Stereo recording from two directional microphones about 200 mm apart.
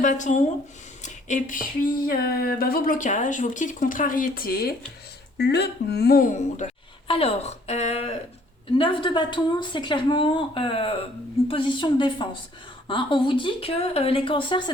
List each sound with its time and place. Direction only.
0.0 s speech: 40° left (ahead or behind)
1.0 s a sound: 40° left (ahead or behind)
7.1 s a woman's voice: 30° left (ahead or behind)